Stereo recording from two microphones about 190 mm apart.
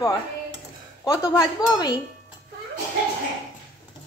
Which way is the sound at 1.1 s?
20° left (ahead or behind).